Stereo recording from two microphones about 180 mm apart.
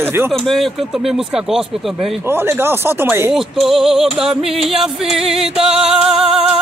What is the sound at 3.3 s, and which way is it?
Speech, centre (ahead or behind).